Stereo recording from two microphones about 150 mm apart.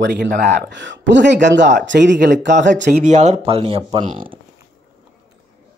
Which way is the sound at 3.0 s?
50° right (ahead or behind).